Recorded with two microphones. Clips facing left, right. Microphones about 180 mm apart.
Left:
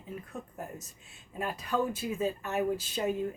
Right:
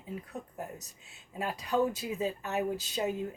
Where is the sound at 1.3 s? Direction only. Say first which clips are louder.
Right 1 dB; 15° right (ahead or behind).